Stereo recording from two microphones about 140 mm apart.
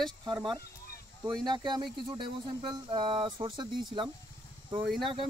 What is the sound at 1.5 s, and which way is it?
Speech, 30° right (ahead or behind).